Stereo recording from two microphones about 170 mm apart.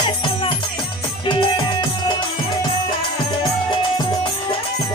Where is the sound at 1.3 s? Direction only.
25° left (ahead or behind).